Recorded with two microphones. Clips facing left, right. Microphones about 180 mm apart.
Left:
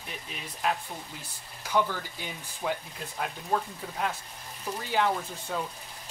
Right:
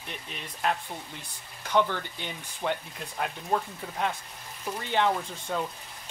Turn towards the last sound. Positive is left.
turn(degrees=5)  # may be behind; listen again after turning